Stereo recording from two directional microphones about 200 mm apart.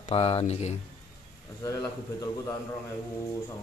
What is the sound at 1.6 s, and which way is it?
Speech, 15° left (ahead or behind).